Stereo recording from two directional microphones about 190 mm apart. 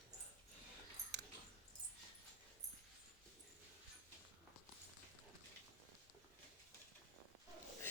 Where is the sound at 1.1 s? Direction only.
60° right (ahead or behind).